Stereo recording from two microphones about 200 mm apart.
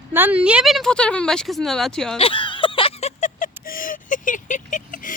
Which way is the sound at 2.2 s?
25° left (ahead or behind).